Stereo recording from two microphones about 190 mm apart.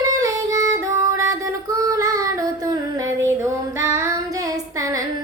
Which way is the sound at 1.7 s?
20° right (ahead or behind).